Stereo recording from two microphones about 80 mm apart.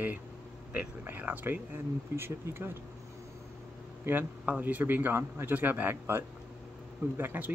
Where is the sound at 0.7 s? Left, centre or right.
Right.